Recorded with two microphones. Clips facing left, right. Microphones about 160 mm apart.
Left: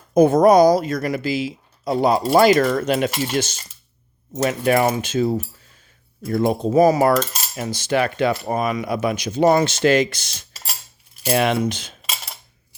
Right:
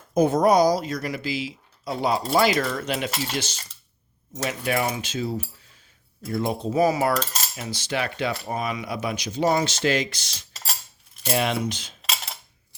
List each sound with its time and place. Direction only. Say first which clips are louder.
0.1 s cutlery: left 6 dB; 55° left (ahead or behind)
11.3 s speech: left 5 dB; 65° left (ahead or behind)